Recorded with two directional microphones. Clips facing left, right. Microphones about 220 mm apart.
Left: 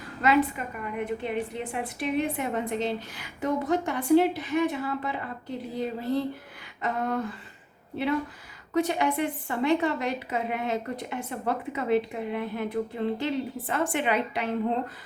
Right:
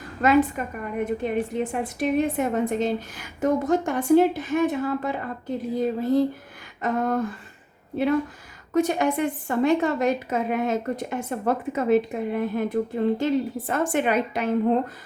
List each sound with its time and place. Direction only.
0.2 s a woman's voice: 45° right (ahead or behind)
6.8 s a woman's voice: 45° right (ahead or behind)
8.7 s a woman's voice: 45° right (ahead or behind)